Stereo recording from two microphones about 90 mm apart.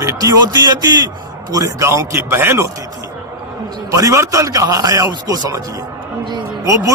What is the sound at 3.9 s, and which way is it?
A man's voice, 40° right (ahead or behind).